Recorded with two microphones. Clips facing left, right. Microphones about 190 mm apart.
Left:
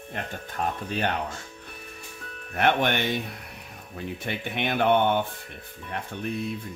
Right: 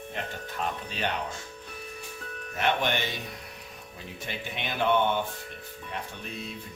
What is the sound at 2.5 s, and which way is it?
Speech, 60° left (ahead or behind).